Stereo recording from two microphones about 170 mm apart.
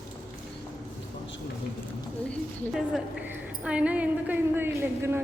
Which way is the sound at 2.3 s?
Centre (ahead or behind).